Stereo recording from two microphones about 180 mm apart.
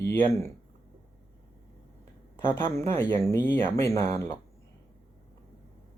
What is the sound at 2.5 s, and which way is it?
Speech, 15° left (ahead or behind).